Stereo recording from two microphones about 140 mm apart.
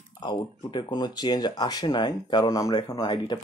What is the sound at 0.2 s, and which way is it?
Speech, 30° left (ahead or behind).